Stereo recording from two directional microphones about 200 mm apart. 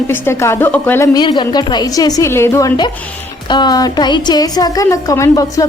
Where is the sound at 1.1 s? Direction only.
25° left (ahead or behind).